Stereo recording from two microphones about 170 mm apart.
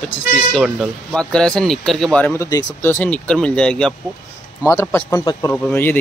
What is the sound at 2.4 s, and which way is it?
Speech, 20° left (ahead or behind).